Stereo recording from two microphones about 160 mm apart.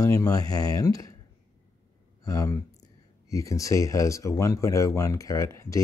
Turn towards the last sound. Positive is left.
turn(degrees=20)  # may be behind; listen again after turning